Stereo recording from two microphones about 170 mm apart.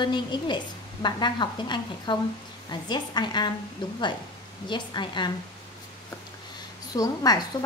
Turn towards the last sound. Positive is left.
turn(degrees=20)  # may be behind; listen again after turning